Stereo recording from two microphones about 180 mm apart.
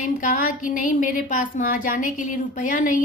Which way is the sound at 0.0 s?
50° left (ahead or behind).